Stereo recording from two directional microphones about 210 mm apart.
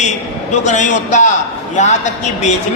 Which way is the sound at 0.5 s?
35° left (ahead or behind).